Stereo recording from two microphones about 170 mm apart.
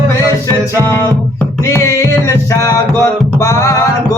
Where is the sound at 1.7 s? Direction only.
15° left (ahead or behind).